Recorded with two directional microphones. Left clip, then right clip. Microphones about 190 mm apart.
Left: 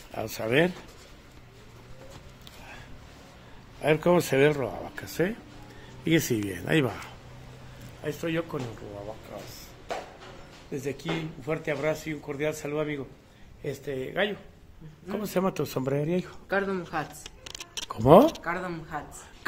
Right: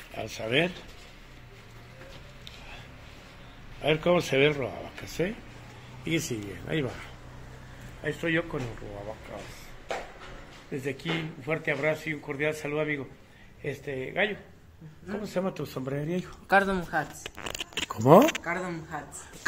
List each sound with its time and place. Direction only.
0.1 s speech: 25° left (ahead or behind)
3.8 s speech: 20° left (ahead or behind)
6.0 s speech: 55° left (ahead or behind)
8.0 s speech: centre (ahead or behind)
10.7 s speech: 10° left (ahead or behind)
13.7 s speech: 20° left (ahead or behind)
15.2 s speech: 60° left (ahead or behind); by 16.3 s 35° left (ahead or behind)
16.4 s speech: 55° right (ahead or behind)
16.9 s speech: centre (ahead or behind)